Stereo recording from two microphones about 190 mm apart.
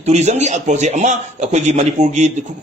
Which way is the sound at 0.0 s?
35° right (ahead or behind).